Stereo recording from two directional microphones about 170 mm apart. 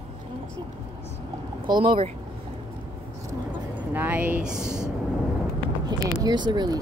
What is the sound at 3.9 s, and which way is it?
Speech, 10° right (ahead or behind).